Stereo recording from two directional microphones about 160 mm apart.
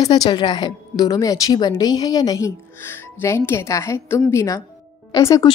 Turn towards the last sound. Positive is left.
turn(degrees=20)  # may be behind; listen again after turning